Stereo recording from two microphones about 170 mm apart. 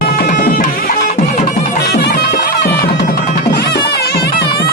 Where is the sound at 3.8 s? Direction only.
70° left (ahead or behind).